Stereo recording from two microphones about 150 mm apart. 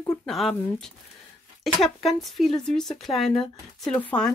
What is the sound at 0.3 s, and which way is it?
Speech, centre (ahead or behind).